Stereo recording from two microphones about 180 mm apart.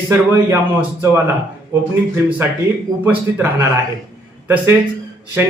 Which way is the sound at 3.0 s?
10° right (ahead or behind).